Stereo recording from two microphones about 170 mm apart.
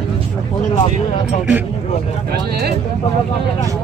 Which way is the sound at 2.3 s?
70° right (ahead or behind).